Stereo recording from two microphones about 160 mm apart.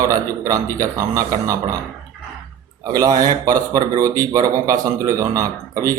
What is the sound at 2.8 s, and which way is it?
Speech, 25° right (ahead or behind).